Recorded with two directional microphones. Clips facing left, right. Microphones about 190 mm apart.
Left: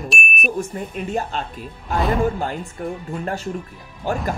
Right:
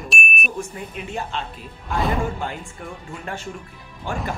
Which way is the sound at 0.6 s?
40° left (ahead or behind).